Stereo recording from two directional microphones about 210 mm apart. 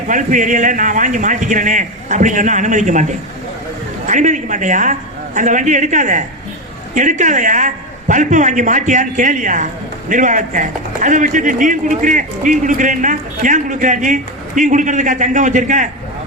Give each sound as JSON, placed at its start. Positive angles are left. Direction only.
{"t": 0.1, "sound": "a man's voice", "side_deg": -40}